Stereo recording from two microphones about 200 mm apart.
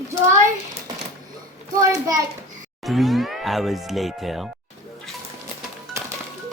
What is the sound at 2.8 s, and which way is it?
Speech, centre (ahead or behind).